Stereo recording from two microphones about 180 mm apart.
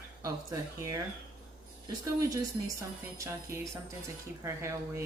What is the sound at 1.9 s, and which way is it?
Speech, 20° right (ahead or behind).